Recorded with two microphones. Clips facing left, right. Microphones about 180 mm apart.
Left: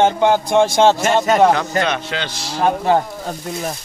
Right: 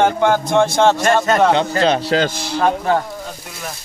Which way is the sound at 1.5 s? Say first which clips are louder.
Right 4 dB; 30° right (ahead or behind).